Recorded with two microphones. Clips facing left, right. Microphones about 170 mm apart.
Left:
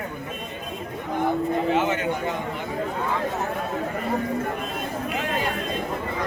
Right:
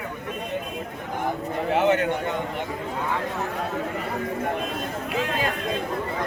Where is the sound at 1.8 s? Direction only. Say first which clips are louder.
Right 5 dB; 65° right (ahead or behind).